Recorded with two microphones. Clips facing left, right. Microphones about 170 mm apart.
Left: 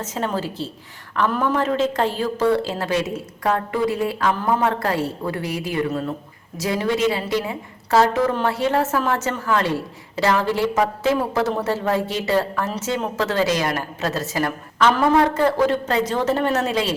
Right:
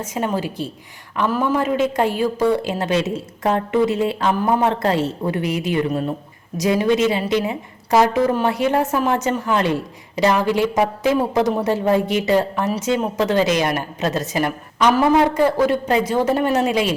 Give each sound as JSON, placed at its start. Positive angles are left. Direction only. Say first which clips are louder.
{"t": 0.0, "sound": "a woman's voice", "louder": "right 2 dB", "side_deg": -10}